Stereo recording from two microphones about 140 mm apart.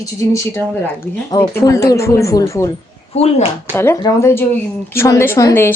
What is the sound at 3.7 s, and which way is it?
A woman's voice, 15° left (ahead or behind).